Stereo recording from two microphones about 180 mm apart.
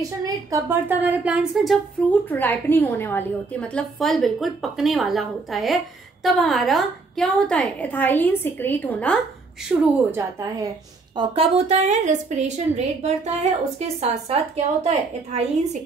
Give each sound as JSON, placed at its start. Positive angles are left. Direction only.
{"t": 0.2, "sound": "speech", "side_deg": -15}
{"t": 2.2, "sound": "a woman's voice", "side_deg": 10}
{"t": 10.1, "sound": "speech", "side_deg": -15}
{"t": 11.1, "sound": "a woman's voice", "side_deg": -30}